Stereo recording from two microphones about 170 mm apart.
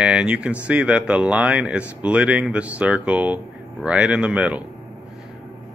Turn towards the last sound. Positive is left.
turn(degrees=-5)  # may be behind; listen again after turning